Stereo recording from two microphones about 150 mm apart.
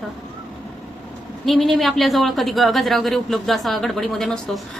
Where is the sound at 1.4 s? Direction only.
Centre (ahead or behind).